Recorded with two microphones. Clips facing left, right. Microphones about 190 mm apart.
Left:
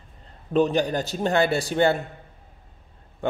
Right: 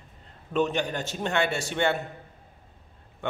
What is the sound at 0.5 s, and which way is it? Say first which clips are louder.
A man's voice: left 5 dB; 35° left (ahead or behind).